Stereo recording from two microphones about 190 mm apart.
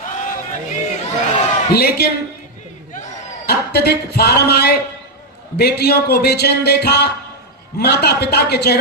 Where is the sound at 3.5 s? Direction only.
60° left (ahead or behind).